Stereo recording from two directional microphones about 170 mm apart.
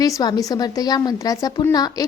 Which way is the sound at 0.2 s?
20° left (ahead or behind).